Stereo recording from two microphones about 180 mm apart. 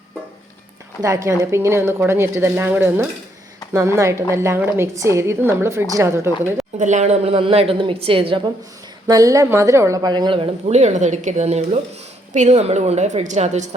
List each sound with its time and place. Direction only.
1.0 s a woman's voice: 15° right (ahead or behind)
6.7 s a woman's voice: 40° right (ahead or behind)
9.0 s a woman's voice: 20° right (ahead or behind); by 13.7 s 40° right (ahead or behind)